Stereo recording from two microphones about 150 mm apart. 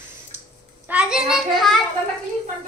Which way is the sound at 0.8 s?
5° right (ahead or behind).